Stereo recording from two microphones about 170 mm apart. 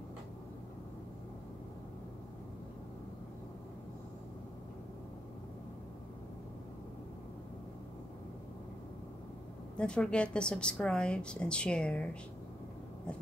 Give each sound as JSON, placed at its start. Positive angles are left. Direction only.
{"t": 9.8, "sound": "a woman's voice", "side_deg": 5}